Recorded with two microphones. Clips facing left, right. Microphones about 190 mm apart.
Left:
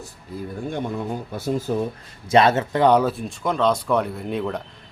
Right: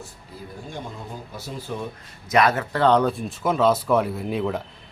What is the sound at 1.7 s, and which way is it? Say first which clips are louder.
Speech: left 6 dB; 45° left (ahead or behind).